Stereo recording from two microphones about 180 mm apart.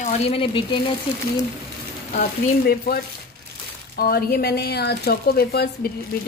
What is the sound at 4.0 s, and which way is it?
A woman's voice, 55° left (ahead or behind).